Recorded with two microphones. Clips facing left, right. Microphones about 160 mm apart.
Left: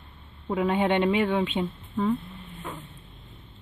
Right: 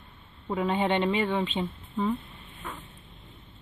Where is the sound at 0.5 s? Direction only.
Centre (ahead or behind).